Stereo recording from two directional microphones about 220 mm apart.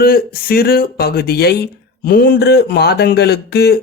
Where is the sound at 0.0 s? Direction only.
40° left (ahead or behind).